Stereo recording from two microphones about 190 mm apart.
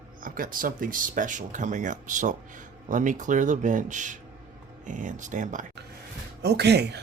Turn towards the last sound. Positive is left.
turn(degrees=-60)  # may be behind; listen again after turning